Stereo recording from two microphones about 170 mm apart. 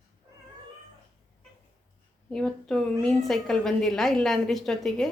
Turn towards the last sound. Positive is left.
turn(degrees=0)  # may be behind; listen again after turning